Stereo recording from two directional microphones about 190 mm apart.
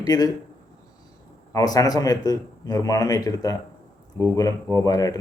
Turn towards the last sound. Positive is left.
turn(degrees=20)  # may be behind; listen again after turning